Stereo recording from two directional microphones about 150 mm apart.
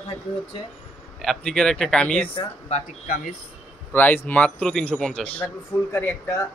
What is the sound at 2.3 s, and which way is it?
Speech, 40° left (ahead or behind).